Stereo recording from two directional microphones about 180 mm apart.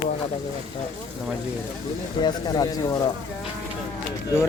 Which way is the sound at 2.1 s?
25° left (ahead or behind).